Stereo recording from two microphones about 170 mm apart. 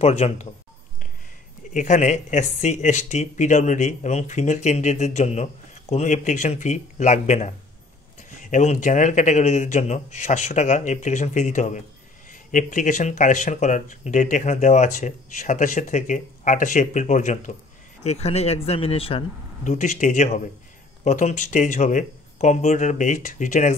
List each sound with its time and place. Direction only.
0.0 s speech: 40° left (ahead or behind)
1.7 s speech: 45° left (ahead or behind)